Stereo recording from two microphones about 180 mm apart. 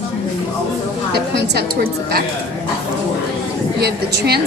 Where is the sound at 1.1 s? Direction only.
65° right (ahead or behind).